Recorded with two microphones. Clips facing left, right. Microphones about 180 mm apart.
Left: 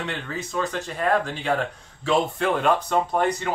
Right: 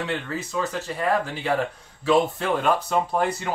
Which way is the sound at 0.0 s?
Centre (ahead or behind).